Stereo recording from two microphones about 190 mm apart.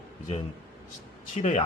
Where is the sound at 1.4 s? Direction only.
35° left (ahead or behind).